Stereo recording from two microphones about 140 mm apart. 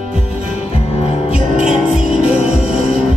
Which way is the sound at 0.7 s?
45° left (ahead or behind).